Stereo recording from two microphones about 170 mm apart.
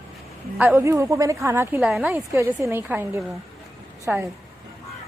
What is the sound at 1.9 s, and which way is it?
Speech, 5° right (ahead or behind).